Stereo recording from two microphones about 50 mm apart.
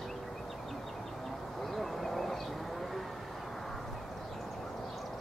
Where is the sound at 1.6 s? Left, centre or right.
Centre.